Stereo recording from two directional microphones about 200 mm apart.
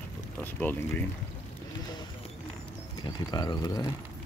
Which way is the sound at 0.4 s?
10° left (ahead or behind).